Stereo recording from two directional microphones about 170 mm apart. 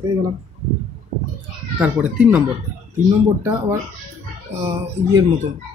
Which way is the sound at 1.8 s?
10° right (ahead or behind).